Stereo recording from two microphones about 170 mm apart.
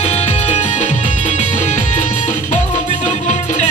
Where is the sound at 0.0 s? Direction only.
40° left (ahead or behind).